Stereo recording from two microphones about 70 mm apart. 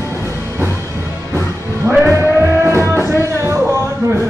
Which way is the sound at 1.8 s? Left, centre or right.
Right.